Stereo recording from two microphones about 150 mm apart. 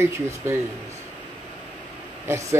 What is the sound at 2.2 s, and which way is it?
Speech, 20° right (ahead or behind).